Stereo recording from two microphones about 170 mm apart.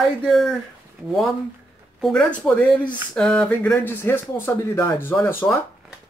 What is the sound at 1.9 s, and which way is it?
Speech, centre (ahead or behind).